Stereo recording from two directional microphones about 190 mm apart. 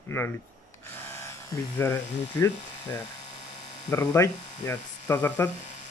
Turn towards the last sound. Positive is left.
turn(degrees=10)  # may be behind; listen again after turning